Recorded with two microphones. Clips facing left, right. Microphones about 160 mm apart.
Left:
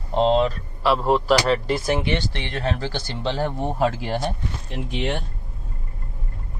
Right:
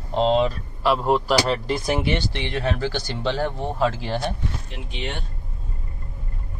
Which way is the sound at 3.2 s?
5° left (ahead or behind).